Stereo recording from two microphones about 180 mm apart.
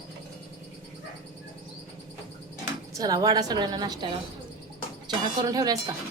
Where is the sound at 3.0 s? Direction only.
20° right (ahead or behind).